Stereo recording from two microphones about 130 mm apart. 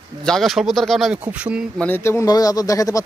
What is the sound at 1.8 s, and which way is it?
Speech, 15° left (ahead or behind).